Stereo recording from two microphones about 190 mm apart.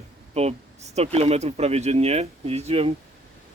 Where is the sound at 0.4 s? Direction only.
35° right (ahead or behind).